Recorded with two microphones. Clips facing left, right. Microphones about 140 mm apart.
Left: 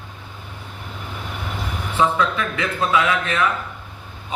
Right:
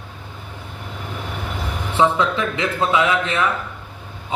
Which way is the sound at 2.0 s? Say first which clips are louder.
Right 2 dB; 20° right (ahead or behind).